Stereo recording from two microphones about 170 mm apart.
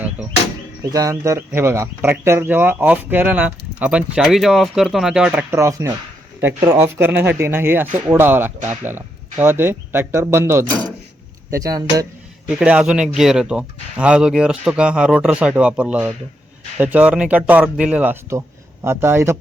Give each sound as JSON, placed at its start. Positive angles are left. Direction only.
{"t": 0.9, "sound": "speech", "side_deg": -20}
{"t": 12.5, "sound": "speech", "side_deg": -5}